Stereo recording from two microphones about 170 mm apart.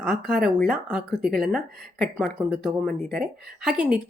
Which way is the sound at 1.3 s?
60° right (ahead or behind).